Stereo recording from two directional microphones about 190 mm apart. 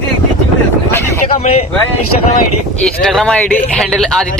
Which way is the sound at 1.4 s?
35° left (ahead or behind).